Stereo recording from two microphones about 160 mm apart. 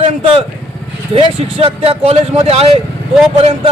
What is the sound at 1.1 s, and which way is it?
A man's voice, 35° right (ahead or behind).